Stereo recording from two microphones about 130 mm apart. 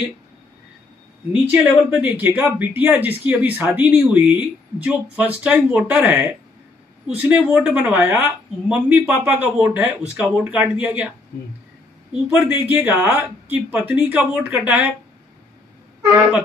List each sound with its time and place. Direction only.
1.3 s speech: 15° right (ahead or behind)